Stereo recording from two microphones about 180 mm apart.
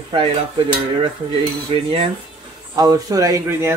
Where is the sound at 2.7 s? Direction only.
20° right (ahead or behind).